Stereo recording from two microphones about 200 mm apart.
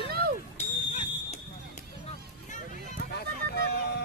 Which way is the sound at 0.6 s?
35° left (ahead or behind).